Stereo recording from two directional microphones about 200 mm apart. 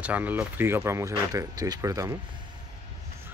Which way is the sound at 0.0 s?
10° right (ahead or behind).